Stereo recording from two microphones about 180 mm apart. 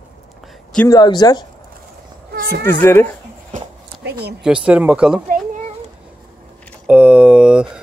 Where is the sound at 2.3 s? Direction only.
55° right (ahead or behind).